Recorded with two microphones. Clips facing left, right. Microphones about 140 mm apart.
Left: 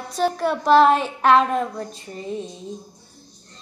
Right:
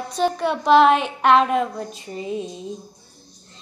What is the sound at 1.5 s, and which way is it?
Child singing, 10° right (ahead or behind).